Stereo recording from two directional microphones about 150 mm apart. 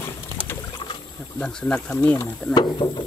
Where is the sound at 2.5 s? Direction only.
30° left (ahead or behind).